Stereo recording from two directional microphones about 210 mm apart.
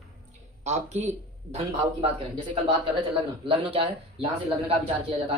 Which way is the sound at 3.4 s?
25° right (ahead or behind).